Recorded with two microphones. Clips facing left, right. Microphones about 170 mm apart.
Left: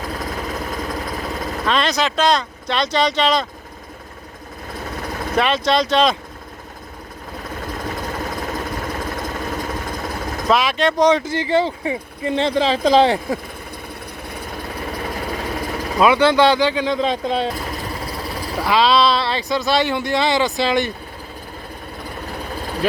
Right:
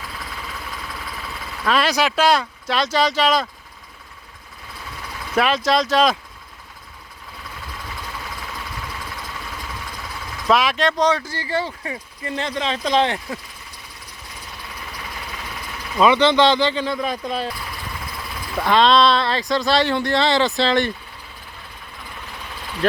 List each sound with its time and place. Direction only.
0.0 s vehicle: 40° left (ahead or behind)
1.6 s speech: 5° right (ahead or behind)
4.7 s vehicle: 45° left (ahead or behind)
5.4 s speech: centre (ahead or behind)
7.3 s vehicle: 45° left (ahead or behind)
10.5 s speech: centre (ahead or behind)
11.0 s speech: 20° left (ahead or behind)
14.3 s vehicle: 55° left (ahead or behind)
16.0 s speech: 10° left (ahead or behind); by 17.3 s 25° left (ahead or behind)
17.5 s vehicle: 45° left (ahead or behind)
18.6 s speech: 5° left (ahead or behind)
19.8 s speech: 20° left (ahead or behind)
22.3 s engine: 40° left (ahead or behind)